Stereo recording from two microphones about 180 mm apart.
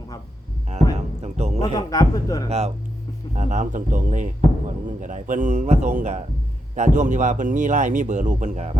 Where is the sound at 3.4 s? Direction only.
45° right (ahead or behind).